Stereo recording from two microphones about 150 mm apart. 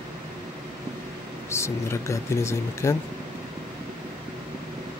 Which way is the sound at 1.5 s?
20° left (ahead or behind).